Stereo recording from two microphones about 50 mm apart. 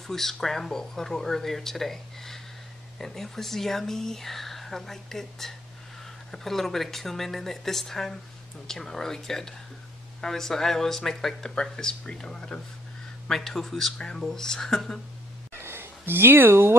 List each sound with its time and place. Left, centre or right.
0.0 s speech: centre
13.9 s speech: centre
15.6 s a sound: right